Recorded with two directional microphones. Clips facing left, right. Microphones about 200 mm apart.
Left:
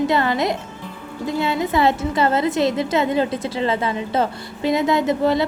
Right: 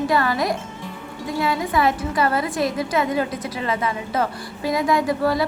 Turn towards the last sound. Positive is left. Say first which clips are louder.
# left 2 dB
turn(degrees=25)  # may be behind; listen again after turning